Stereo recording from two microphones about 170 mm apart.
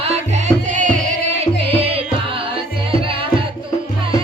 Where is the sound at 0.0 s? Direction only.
40° right (ahead or behind).